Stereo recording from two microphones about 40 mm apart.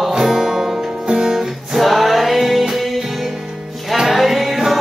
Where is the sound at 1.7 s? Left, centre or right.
Centre.